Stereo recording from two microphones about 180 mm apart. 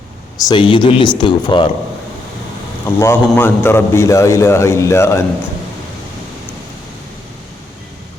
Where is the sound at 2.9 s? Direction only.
15° left (ahead or behind).